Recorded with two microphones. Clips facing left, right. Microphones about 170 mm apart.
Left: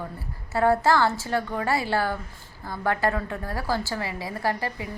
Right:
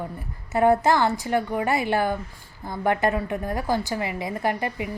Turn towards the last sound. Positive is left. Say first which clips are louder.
# right 2 dB
turn(degrees=-20)  # may be behind; listen again after turning